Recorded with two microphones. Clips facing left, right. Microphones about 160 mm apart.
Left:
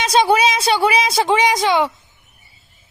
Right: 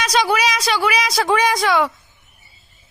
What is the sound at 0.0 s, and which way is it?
A woman's voice, 30° left (ahead or behind).